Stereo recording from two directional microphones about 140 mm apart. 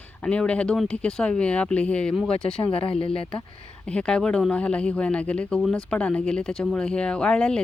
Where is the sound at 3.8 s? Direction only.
5° left (ahead or behind).